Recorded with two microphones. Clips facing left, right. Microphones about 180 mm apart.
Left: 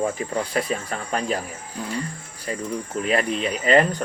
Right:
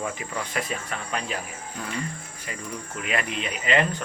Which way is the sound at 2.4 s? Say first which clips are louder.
Left 9 dB; 35° left (ahead or behind).